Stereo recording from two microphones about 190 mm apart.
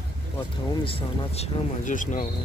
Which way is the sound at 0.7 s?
30° left (ahead or behind).